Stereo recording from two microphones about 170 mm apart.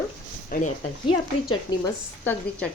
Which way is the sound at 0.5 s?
60° left (ahead or behind).